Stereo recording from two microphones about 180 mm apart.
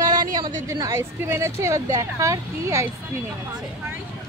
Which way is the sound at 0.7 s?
15° right (ahead or behind).